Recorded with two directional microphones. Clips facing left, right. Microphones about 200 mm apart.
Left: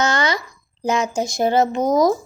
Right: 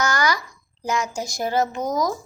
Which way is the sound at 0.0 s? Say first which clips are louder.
Left 3 dB; 25° left (ahead or behind).